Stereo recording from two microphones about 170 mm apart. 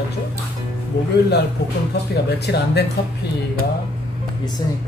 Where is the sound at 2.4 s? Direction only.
80° left.